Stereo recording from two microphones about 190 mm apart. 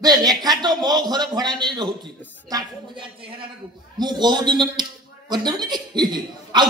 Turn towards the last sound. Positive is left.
turn(degrees=-20)  # may be behind; listen again after turning